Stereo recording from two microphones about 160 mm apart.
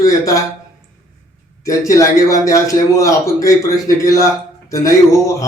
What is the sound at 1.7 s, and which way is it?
A man's voice, 20° left (ahead or behind).